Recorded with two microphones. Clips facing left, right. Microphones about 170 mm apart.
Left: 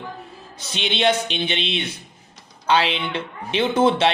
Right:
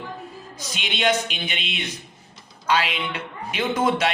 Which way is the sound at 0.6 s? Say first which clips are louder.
Left 4 dB; 30° left (ahead or behind).